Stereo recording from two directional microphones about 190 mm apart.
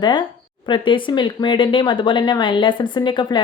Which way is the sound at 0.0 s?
25° left (ahead or behind).